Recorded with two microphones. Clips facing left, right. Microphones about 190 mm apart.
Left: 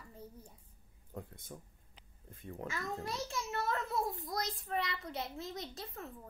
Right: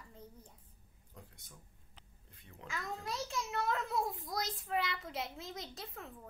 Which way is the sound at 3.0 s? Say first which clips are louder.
Even; centre (ahead or behind).